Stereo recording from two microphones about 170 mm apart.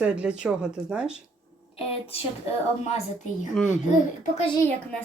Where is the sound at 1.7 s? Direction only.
35° left (ahead or behind).